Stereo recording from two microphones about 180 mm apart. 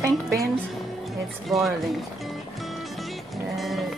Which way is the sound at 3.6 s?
Centre (ahead or behind).